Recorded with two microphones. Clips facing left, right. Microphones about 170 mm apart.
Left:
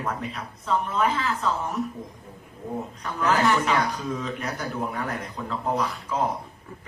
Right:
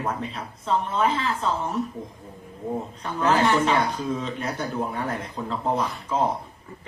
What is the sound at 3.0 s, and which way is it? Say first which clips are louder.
Speech: right 1 dB; 30° right (ahead or behind).